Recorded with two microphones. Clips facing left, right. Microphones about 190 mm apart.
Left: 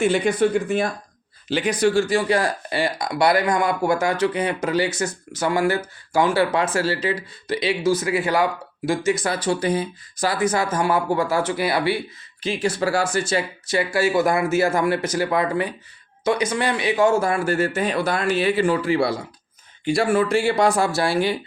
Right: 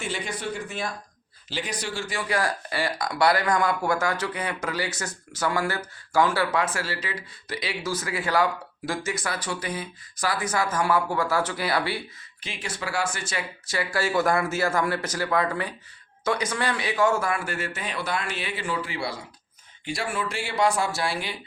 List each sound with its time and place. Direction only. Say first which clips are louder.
0.0 s speech: left 13 dB; 55° left (ahead or behind)
2.1 s speech: left 7 dB; 25° left (ahead or behind)
12.4 s speech: left 12 dB; 35° left (ahead or behind)
13.7 s speech: left 6 dB; 20° left (ahead or behind); by 21.3 s 35° left (ahead or behind)